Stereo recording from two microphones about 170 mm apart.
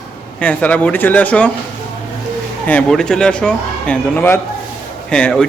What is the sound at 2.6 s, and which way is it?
A man's voice, 5° left (ahead or behind).